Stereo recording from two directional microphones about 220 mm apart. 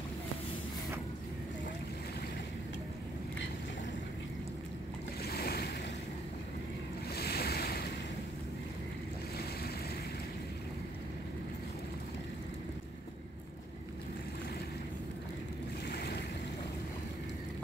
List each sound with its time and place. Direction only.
5.2 s waves: 45° left (ahead or behind)
7.2 s waves: 45° left (ahead or behind)
15.9 s waves: 45° left (ahead or behind)